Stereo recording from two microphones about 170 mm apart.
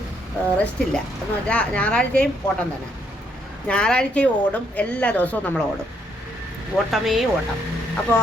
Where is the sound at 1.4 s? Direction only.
5° left (ahead or behind).